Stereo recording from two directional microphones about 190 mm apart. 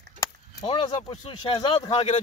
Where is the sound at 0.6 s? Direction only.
25° left (ahead or behind).